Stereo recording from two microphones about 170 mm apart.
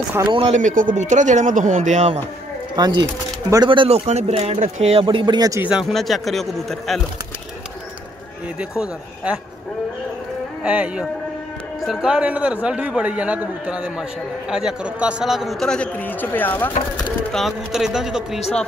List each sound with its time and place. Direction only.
0.3 s speech: 30° right (ahead or behind)
0.6 s speech: 50° right (ahead or behind)
2.7 s speech: 25° right (ahead or behind); by 5.0 s 40° right (ahead or behind)
5.0 s speech: 25° right (ahead or behind)
5.6 s a man's voice: 5° right (ahead or behind)
8.5 s a man's voice: 5° right (ahead or behind)
10.6 s a man's voice: 10° right (ahead or behind); by 16.7 s 10° left (ahead or behind)
17.3 s a man's voice: centre (ahead or behind)